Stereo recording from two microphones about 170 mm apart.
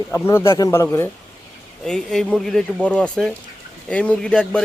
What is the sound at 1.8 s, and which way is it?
A man's voice, centre (ahead or behind).